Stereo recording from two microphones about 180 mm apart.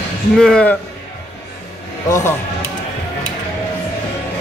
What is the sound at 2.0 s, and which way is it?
Speech, 15° left (ahead or behind).